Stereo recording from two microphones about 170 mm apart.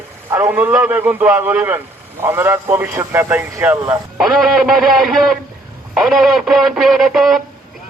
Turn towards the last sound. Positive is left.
turn(degrees=0)  # may be behind; listen again after turning